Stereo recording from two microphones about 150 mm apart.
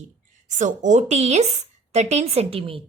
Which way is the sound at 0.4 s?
55° right (ahead or behind).